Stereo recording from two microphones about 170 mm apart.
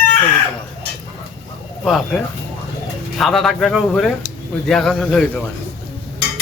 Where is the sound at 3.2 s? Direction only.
Centre (ahead or behind).